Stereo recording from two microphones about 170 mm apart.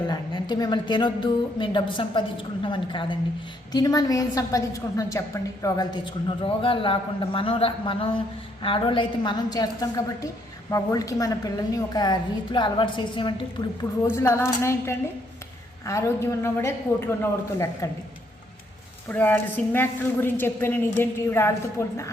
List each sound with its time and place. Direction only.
0.1 s a woman's voice: 25° left (ahead or behind)
14.1 s a woman's voice: 15° left (ahead or behind)
19.0 s a woman's voice: 10° left (ahead or behind)